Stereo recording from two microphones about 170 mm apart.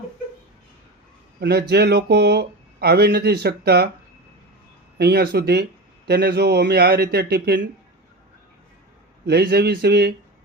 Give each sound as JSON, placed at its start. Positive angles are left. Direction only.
{"t": 1.4, "sound": "speech", "side_deg": -70}
{"t": 4.9, "sound": "speech", "side_deg": -65}
{"t": 9.2, "sound": "speech", "side_deg": -70}